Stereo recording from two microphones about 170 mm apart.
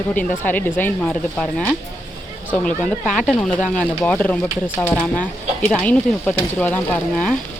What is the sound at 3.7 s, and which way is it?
Speech, 10° left (ahead or behind).